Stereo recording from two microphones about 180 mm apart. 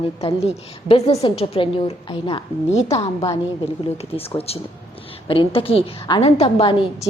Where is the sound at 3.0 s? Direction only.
20° left (ahead or behind).